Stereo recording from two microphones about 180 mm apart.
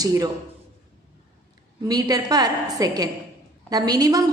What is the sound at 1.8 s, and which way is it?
A woman's voice, 20° right (ahead or behind).